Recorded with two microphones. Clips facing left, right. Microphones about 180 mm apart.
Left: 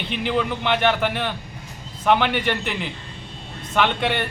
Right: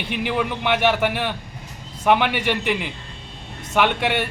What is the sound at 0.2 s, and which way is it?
A man's voice, 10° right (ahead or behind).